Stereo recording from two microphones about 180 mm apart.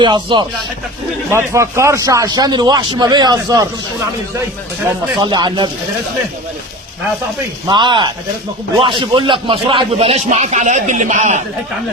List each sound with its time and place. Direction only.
0.0 s a man's voice: 25° right (ahead or behind)
1.3 s a man's voice: 15° right (ahead or behind)
5.2 s a man's voice: 25° right (ahead or behind)
7.7 s a man's voice: 25° right (ahead or behind)